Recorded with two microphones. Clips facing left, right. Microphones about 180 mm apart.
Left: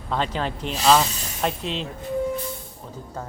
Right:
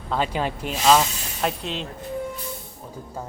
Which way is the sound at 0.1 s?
10° right (ahead or behind).